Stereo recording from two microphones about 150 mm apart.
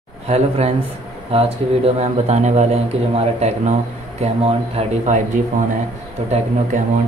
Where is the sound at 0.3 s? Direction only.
45° right (ahead or behind).